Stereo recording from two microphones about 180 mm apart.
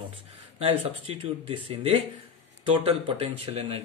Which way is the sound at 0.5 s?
30° right (ahead or behind).